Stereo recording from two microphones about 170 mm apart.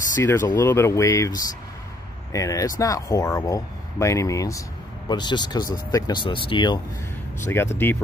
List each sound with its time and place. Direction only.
0.2 s speech: 15° left (ahead or behind); by 6.8 s 30° left (ahead or behind)
7.4 s speech: 15° left (ahead or behind)